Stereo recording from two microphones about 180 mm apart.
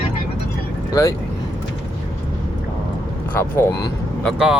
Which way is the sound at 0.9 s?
20° left (ahead or behind).